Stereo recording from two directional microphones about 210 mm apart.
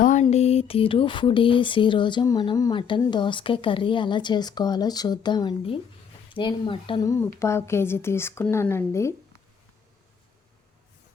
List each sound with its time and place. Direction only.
0.0 s speech: 35° left (ahead or behind); by 9.1 s 15° left (ahead or behind)